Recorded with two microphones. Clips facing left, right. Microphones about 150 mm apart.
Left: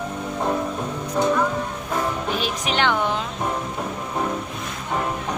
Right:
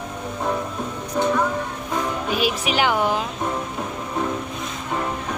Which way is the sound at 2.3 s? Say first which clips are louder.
Right 2 dB; 10° right (ahead or behind).